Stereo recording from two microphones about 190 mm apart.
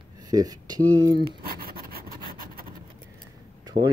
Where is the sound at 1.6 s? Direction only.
50° right (ahead or behind).